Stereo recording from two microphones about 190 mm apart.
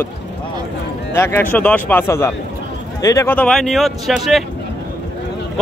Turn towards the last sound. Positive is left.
turn(degrees=0)  # may be behind; listen again after turning